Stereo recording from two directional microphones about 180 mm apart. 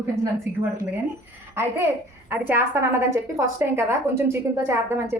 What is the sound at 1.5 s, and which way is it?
A child's voice, 15° right (ahead or behind).